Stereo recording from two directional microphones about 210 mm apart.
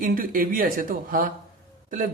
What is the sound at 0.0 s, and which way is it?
Speech, 40° right (ahead or behind).